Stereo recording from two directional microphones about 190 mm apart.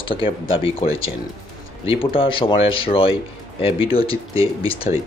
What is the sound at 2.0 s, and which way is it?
Speech, 25° left (ahead or behind).